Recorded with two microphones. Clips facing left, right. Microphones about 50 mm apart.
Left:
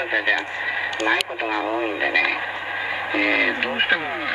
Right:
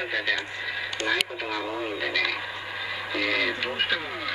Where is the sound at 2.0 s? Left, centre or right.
Left.